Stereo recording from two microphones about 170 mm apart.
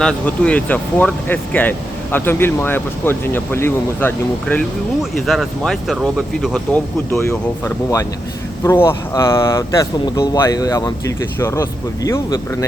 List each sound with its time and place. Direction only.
0.0 s speech: 5° left (ahead or behind)
7.1 s speech: 15° left (ahead or behind)